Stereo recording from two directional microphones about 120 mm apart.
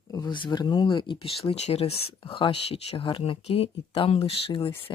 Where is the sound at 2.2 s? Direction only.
45° left (ahead or behind).